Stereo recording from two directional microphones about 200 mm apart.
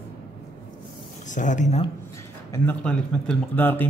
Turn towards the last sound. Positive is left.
turn(degrees=10)  # may be behind; listen again after turning